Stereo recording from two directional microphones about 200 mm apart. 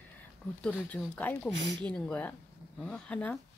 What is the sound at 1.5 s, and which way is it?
Speech, 65° right (ahead or behind).